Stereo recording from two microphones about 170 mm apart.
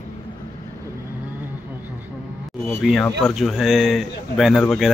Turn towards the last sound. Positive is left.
turn(degrees=0)  # may be behind; listen again after turning